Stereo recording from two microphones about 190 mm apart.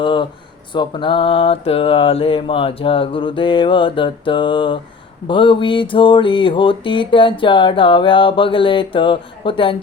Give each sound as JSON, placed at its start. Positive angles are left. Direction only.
{"t": 0.0, "sound": "speech", "side_deg": 25}
{"t": 0.7, "sound": "mantra", "side_deg": 25}